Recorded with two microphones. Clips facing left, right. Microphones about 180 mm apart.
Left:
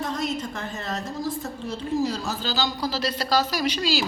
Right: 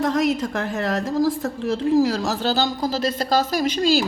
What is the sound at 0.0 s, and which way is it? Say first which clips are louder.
A woman's voice: right 8 dB; 90° right.